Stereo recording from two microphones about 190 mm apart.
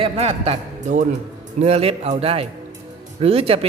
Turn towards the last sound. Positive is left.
turn(degrees=-30)  # may be behind; listen again after turning